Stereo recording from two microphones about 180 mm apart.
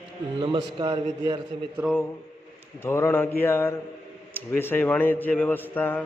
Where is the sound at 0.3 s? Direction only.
25° right (ahead or behind).